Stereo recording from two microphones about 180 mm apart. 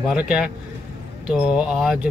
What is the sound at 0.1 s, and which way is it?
Speech, 5° right (ahead or behind).